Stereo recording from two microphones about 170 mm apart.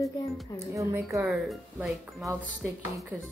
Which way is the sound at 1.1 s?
Centre (ahead or behind).